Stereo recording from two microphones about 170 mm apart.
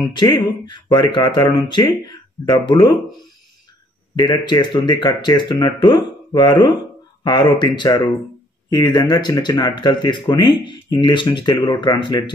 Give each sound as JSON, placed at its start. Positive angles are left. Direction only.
{"t": 0.1, "sound": "speech", "side_deg": 30}
{"t": 4.1, "sound": "speech", "side_deg": 25}